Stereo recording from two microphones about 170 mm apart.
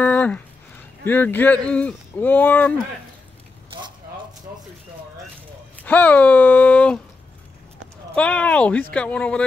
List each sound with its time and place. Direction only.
0.0 s a sound: 10° left (ahead or behind)
1.0 s speech: 10° left (ahead or behind)
3.7 s keys jangling: 30° right (ahead or behind)
5.9 s speech: 10° left (ahead or behind)
8.1 s speech: 5° left (ahead or behind)